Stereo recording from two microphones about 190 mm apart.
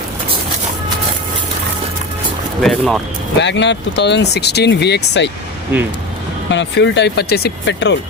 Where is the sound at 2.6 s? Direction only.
Centre (ahead or behind).